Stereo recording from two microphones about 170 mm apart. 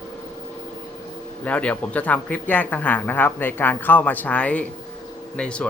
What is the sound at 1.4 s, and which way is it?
Speech, 10° left (ahead or behind).